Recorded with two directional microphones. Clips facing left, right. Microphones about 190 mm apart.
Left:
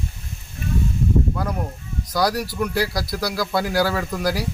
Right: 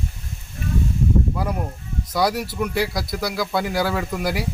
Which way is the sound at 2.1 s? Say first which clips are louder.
Even; centre (ahead or behind).